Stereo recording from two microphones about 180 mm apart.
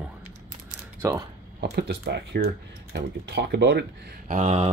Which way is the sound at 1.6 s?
65° right (ahead or behind).